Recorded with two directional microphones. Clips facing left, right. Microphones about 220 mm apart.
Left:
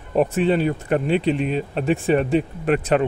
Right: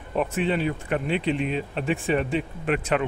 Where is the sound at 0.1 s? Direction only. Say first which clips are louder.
Left 6 dB; 40° left (ahead or behind).